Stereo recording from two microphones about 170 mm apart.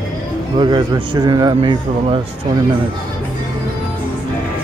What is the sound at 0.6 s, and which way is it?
Speech, 25° right (ahead or behind).